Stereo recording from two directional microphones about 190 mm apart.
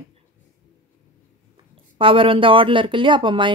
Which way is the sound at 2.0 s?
30° right (ahead or behind).